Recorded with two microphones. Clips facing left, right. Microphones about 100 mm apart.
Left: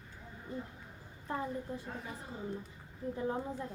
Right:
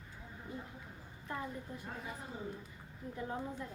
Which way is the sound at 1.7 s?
30° left (ahead or behind).